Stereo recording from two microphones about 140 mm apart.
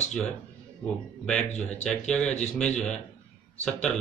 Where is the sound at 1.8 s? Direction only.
5° left (ahead or behind).